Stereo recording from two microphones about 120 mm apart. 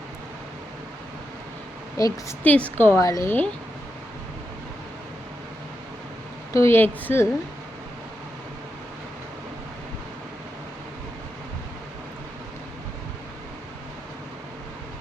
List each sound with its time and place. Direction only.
2.0 s a woman's voice: 30° left (ahead or behind)
2.4 s a woman's voice: 10° left (ahead or behind)
6.5 s a woman's voice: 20° left (ahead or behind)